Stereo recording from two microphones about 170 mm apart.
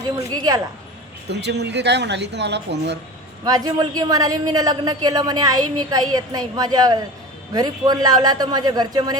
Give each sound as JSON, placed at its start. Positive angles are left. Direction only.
{"t": 0.3, "sound": "a man's voice", "side_deg": -20}
{"t": 1.3, "sound": "speech", "side_deg": -80}
{"t": 3.4, "sound": "a man's voice", "side_deg": -20}